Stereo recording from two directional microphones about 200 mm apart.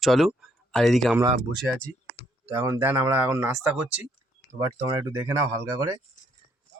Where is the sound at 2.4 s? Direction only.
15° right (ahead or behind).